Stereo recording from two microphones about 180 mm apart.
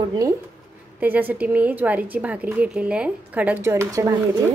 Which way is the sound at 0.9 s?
10° right (ahead or behind).